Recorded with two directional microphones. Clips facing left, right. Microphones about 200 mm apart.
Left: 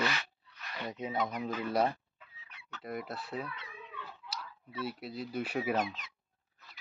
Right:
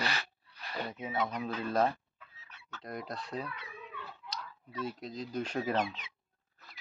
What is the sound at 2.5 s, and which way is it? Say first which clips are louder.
Fowl: left 1 dB; 15° left (ahead or behind).